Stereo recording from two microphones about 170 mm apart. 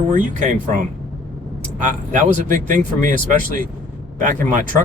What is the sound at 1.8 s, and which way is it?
Speech, 45° right (ahead or behind).